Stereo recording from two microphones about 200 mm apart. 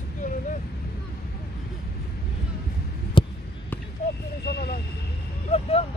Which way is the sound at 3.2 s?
25° left (ahead or behind).